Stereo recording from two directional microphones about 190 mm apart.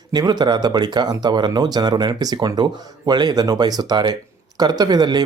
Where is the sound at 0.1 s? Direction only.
20° right (ahead or behind).